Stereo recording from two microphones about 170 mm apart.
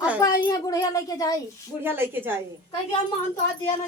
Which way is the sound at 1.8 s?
10° right (ahead or behind).